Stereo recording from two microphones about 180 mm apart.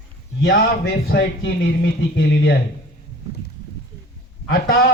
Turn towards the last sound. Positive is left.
turn(degrees=60)  # may be behind; listen again after turning